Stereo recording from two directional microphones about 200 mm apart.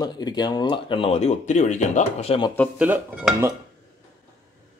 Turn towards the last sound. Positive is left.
turn(degrees=-5)  # may be behind; listen again after turning